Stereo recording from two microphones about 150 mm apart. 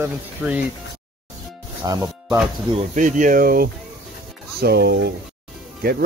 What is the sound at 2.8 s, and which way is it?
Speech, 55° right (ahead or behind).